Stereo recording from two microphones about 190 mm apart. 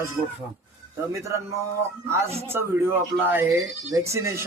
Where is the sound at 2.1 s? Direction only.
15° right (ahead or behind).